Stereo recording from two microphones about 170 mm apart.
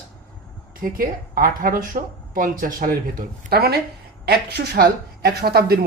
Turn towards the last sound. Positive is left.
turn(degrees=-65)  # may be behind; listen again after turning